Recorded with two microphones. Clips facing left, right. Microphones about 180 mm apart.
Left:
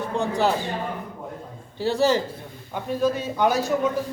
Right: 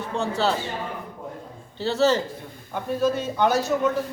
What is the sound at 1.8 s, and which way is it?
A man's voice, 15° left (ahead or behind).